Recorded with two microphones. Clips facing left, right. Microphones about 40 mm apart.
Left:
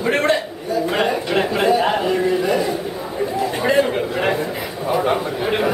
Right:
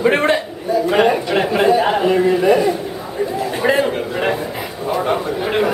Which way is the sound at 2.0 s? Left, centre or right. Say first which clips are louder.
Right 4 dB; centre.